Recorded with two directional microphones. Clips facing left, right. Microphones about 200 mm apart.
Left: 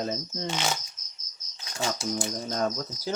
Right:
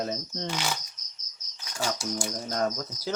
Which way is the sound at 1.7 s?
25° left (ahead or behind).